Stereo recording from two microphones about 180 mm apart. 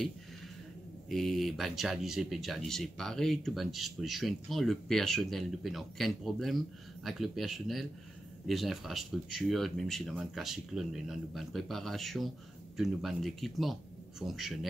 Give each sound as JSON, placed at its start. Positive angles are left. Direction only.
{"t": 1.0, "sound": "speech", "side_deg": 0}